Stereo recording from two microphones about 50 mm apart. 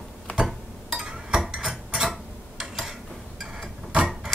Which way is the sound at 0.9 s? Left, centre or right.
Centre.